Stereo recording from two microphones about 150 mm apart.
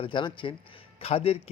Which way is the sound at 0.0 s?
35° left (ahead or behind).